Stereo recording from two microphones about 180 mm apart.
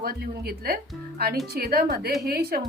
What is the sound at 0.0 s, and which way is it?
A woman's voice, 60° right (ahead or behind).